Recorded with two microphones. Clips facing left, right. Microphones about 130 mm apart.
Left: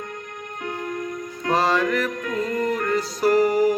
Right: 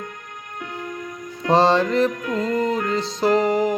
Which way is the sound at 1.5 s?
30° right (ahead or behind).